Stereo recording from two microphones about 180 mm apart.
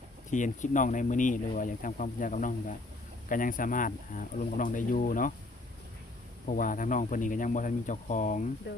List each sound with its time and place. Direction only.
0.3 s speech: 45° left (ahead or behind)
6.5 s speech: 45° left (ahead or behind)